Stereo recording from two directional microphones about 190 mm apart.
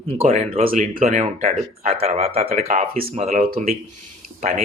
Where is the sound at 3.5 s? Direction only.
50° right (ahead or behind).